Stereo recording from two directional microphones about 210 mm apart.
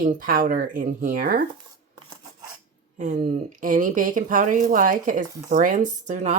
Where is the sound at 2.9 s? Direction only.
35° right (ahead or behind).